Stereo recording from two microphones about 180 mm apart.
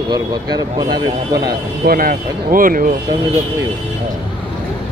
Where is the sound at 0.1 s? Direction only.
20° right (ahead or behind).